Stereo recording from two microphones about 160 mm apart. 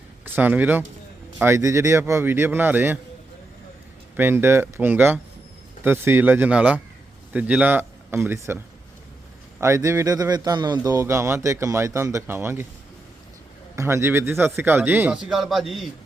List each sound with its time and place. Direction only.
0.3 s a man's voice: 10° right (ahead or behind)
4.2 s a man's voice: 15° right (ahead or behind)
9.6 s a man's voice: 15° right (ahead or behind)
13.7 s a man's voice: 15° right (ahead or behind); by 15.9 s centre (ahead or behind)